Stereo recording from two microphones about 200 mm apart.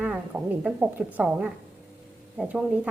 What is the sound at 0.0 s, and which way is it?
A woman's voice, 5° right (ahead or behind).